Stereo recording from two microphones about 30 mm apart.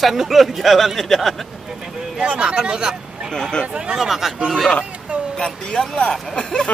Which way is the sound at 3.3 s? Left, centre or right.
Left.